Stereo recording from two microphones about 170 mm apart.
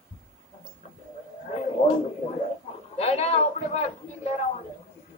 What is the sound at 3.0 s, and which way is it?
Speech, 40° left (ahead or behind).